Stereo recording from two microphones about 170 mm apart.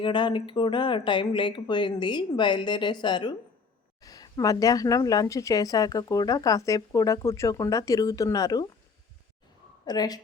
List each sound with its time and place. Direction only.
0.0 s speech: 30° left (ahead or behind)
9.8 s speech: 25° left (ahead or behind)